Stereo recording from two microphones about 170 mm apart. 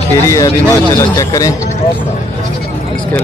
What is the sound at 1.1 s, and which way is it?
Speech, 20° left (ahead or behind).